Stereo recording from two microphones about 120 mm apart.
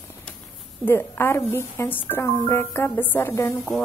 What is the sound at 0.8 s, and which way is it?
A woman's voice, 20° left (ahead or behind).